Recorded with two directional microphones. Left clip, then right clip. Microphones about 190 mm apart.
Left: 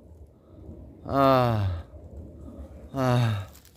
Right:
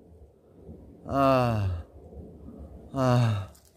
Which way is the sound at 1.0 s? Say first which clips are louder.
Left 2 dB; centre (ahead or behind).